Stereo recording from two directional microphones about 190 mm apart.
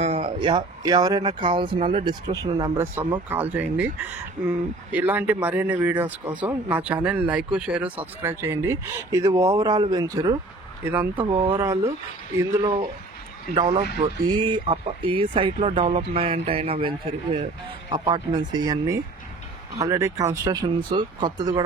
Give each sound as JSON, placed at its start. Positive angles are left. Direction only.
{"t": 0.0, "sound": "speech", "side_deg": -30}
{"t": 2.3, "sound": "speech", "side_deg": -20}
{"t": 11.1, "sound": "speech", "side_deg": -30}
{"t": 11.5, "sound": "speech", "side_deg": -15}